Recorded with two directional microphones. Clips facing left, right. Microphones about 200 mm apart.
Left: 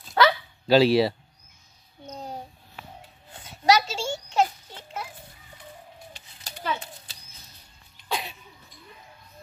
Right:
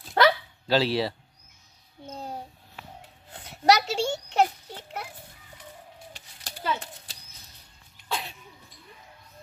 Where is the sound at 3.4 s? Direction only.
65° right (ahead or behind).